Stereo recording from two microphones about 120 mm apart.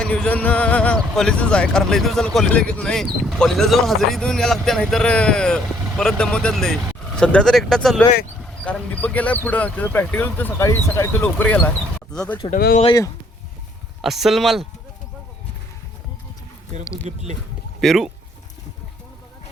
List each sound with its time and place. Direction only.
0.0 s speech: 10° left (ahead or behind)
14.0 s speech: centre (ahead or behind)
17.1 s speech: 70° right (ahead or behind)
17.7 s speech: centre (ahead or behind)